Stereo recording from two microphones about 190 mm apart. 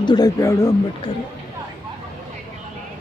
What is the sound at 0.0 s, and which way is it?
Speech, 20° left (ahead or behind).